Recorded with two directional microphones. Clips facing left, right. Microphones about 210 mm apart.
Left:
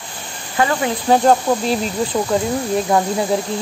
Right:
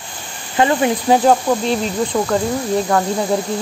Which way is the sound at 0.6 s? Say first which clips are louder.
Right 3 dB; 25° right (ahead or behind).